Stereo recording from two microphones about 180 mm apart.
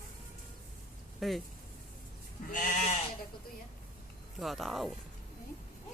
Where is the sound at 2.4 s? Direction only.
45° left (ahead or behind).